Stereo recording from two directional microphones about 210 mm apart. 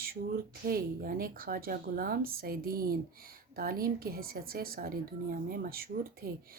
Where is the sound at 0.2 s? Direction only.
40° right (ahead or behind).